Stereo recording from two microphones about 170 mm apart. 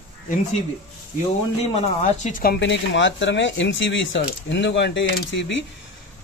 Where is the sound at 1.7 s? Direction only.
45° left (ahead or behind).